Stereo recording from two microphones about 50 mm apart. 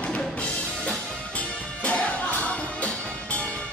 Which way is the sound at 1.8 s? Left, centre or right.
Left.